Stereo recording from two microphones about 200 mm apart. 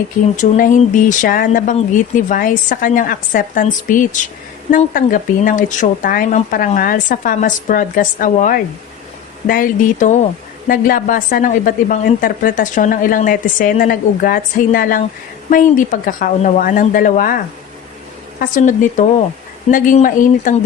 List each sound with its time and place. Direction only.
0.3 s a woman's voice: 40° left (ahead or behind)